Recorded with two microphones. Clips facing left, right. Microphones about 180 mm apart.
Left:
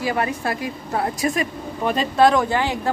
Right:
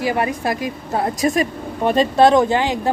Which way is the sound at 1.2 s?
25° right (ahead or behind).